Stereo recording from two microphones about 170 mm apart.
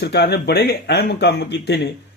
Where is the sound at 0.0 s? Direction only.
80° left.